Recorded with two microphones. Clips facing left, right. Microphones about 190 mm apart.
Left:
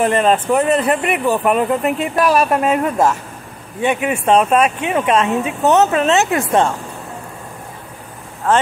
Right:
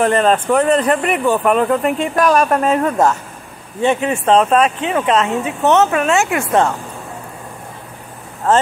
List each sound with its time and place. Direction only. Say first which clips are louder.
0.0 s speech: right 1 dB; 10° left (ahead or behind)